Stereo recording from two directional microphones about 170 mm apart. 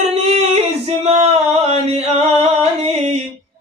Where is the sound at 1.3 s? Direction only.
35° right (ahead or behind).